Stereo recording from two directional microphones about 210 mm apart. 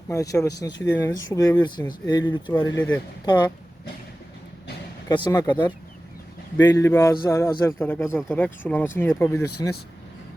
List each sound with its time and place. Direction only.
0.1 s speech: 15° left (ahead or behind)
2.6 s speech: 10° left (ahead or behind)
3.2 s speech: 20° left (ahead or behind)
5.0 s speech: 20° left (ahead or behind)
6.7 s speech: 15° left (ahead or behind)